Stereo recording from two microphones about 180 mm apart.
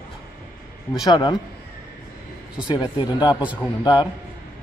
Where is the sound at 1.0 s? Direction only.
25° left (ahead or behind).